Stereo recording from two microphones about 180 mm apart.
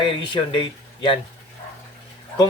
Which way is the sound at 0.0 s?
30° left (ahead or behind).